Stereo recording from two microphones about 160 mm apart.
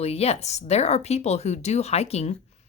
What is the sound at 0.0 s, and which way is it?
A woman's voice, 40° left (ahead or behind).